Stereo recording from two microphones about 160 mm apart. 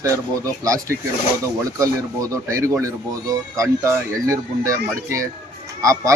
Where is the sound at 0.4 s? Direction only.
20° right (ahead or behind).